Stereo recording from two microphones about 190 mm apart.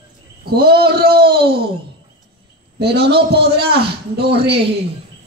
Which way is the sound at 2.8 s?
60° right (ahead or behind).